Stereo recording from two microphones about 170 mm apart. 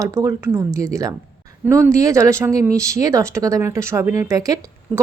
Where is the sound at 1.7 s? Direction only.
15° right (ahead or behind).